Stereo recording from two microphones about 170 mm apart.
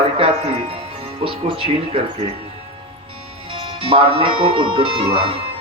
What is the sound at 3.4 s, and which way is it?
Speech, 30° right (ahead or behind).